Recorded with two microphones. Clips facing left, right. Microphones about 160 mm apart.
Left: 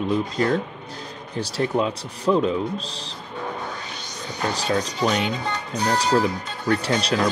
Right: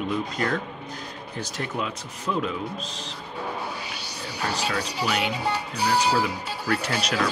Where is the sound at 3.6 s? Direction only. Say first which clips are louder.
Left 1 dB; 5° right (ahead or behind).